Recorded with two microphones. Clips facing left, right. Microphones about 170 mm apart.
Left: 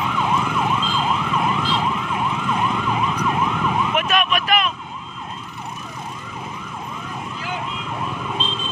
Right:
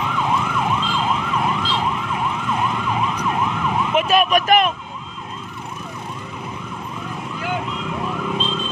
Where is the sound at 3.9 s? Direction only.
35° right (ahead or behind).